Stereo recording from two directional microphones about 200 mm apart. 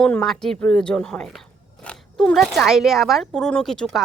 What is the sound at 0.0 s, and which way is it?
Speech, 5° left (ahead or behind).